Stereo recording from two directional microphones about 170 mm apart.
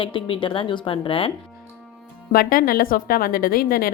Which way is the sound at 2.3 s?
60° left (ahead or behind).